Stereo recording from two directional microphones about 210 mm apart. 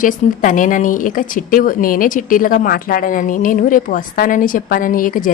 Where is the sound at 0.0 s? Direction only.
40° left (ahead or behind).